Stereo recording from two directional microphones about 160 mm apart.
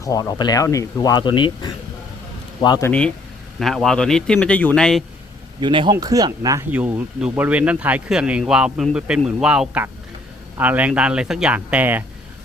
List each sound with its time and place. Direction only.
0.0 s speech: 20° left (ahead or behind)
3.6 s a man's voice: centre (ahead or behind)
5.5 s speech: 30° right (ahead or behind)
6.7 s speech: 10° right (ahead or behind)